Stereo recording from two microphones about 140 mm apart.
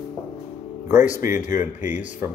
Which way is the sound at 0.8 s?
15° right (ahead or behind).